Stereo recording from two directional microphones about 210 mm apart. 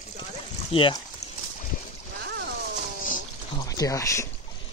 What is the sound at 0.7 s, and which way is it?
Speech, 25° left (ahead or behind).